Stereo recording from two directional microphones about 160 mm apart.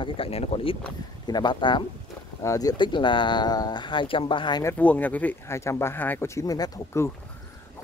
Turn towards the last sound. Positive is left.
turn(degrees=20)  # may be behind; listen again after turning